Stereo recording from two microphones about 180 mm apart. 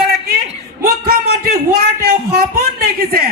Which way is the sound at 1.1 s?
55° right (ahead or behind).